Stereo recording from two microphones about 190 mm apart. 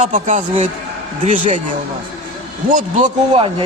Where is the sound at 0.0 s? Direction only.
40° right (ahead or behind).